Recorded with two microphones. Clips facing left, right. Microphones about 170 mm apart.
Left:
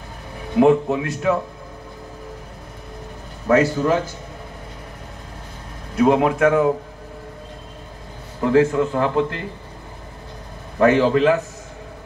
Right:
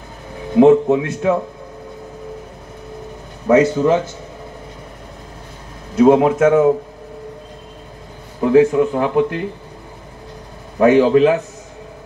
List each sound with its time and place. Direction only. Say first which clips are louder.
0.6 s speech: right 5 dB; 25° right (ahead or behind)
3.4 s speech: right 4 dB; 20° right (ahead or behind)
5.9 s speech: right 5 dB; 25° right (ahead or behind)
8.4 s a man's voice: right 4 dB; 15° right (ahead or behind)
10.8 s a man's voice: right 4 dB; 15° right (ahead or behind)